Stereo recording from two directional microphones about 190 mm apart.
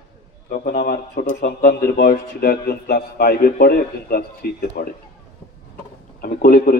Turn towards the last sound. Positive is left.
turn(degrees=50)  # may be behind; listen again after turning